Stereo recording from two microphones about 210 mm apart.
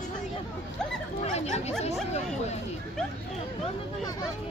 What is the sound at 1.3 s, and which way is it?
Chatter, 30° left (ahead or behind).